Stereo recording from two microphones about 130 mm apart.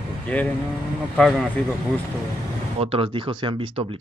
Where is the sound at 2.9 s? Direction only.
40° right (ahead or behind).